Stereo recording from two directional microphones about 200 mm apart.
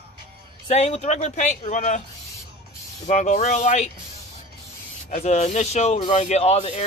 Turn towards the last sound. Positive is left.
turn(degrees=30)  # may be behind; listen again after turning